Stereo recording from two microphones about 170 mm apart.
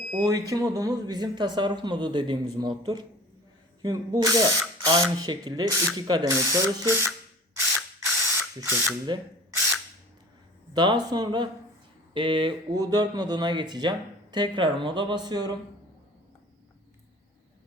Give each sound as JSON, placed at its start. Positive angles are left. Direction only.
{"t": 0.2, "sound": "speech", "side_deg": -20}
{"t": 8.2, "sound": "ratchet", "side_deg": -15}
{"t": 10.8, "sound": "speech", "side_deg": -25}